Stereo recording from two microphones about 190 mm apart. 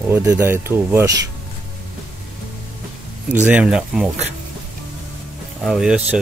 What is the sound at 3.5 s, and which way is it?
Speech, 5° right (ahead or behind).